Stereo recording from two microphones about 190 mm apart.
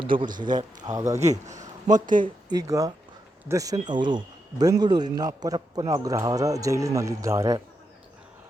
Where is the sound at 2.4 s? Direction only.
20° right (ahead or behind).